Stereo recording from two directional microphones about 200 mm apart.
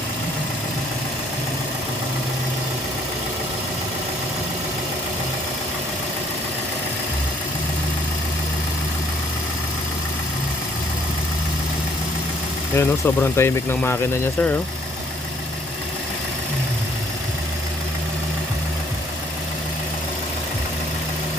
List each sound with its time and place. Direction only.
12.7 s speech: 10° left (ahead or behind)